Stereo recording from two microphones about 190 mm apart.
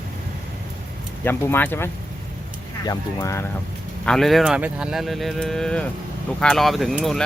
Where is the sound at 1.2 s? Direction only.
10° left (ahead or behind).